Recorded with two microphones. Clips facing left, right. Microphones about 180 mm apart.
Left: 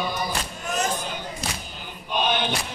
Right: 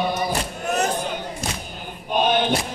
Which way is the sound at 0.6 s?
60° right (ahead or behind).